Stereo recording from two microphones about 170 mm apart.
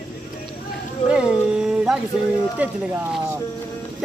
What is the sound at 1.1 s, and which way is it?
Speech, 5° right (ahead or behind).